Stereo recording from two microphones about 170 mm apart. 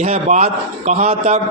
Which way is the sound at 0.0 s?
40° right (ahead or behind).